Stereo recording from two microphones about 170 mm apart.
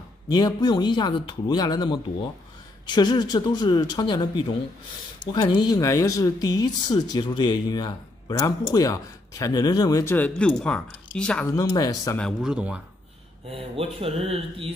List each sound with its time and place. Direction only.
0.3 s speech: 25° left (ahead or behind); by 11.4 s 5° left (ahead or behind)
11.5 s speech: 20° left (ahead or behind)
12.2 s speech: centre (ahead or behind)
13.5 s speech: 35° right (ahead or behind)